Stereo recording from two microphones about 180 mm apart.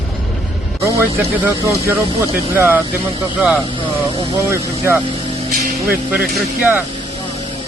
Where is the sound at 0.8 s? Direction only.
15° right (ahead or behind).